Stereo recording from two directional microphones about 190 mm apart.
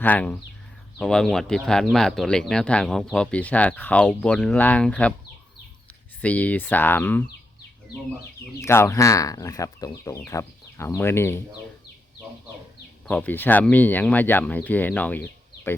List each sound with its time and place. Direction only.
0.0 s speech: 10° left (ahead or behind)
6.2 s speech: 5° left (ahead or behind)
8.6 s speech: 15° left (ahead or behind)
13.1 s speech: 10° left (ahead or behind)